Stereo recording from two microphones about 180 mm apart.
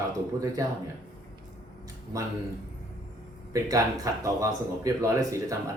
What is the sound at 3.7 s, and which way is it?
Speech, 20° right (ahead or behind).